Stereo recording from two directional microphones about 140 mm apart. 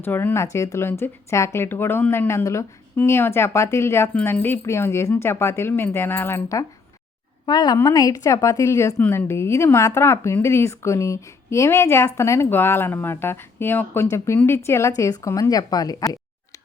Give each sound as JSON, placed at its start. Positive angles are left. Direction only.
{"t": 0.0, "sound": "a woman's voice", "side_deg": 15}